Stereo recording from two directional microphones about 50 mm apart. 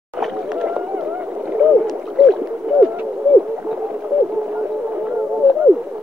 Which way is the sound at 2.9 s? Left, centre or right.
Right.